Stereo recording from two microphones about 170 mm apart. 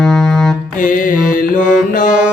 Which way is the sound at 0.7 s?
50° left (ahead or behind).